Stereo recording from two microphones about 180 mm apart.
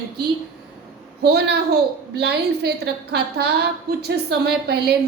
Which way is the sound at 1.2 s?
65° right (ahead or behind).